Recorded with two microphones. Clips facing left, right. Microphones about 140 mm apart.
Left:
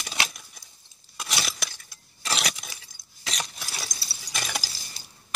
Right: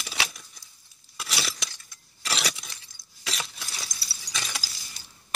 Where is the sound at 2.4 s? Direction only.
50° left (ahead or behind).